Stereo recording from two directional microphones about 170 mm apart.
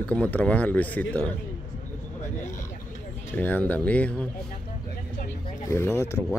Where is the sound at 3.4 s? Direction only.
10° left (ahead or behind).